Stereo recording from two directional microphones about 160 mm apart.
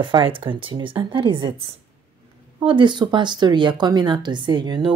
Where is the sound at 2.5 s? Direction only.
30° right (ahead or behind).